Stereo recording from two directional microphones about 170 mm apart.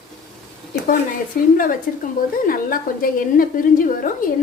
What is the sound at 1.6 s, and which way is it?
A woman's voice, 55° left (ahead or behind).